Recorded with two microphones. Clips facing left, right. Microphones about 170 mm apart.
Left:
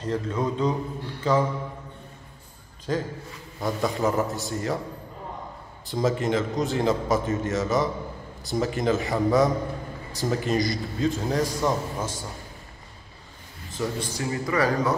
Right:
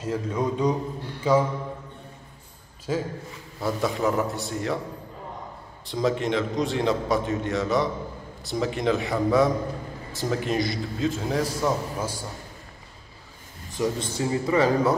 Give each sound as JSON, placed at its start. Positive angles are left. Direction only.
{"t": 0.0, "sound": "a man's voice", "side_deg": -10}
{"t": 2.9, "sound": "a man's voice", "side_deg": -5}
{"t": 5.9, "sound": "a man's voice", "side_deg": 0}
{"t": 13.7, "sound": "a man's voice", "side_deg": -20}